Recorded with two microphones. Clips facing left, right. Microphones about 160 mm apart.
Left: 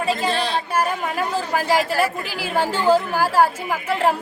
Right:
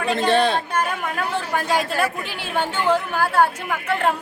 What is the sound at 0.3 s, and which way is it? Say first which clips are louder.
Speech: right 4 dB; 55° right (ahead or behind).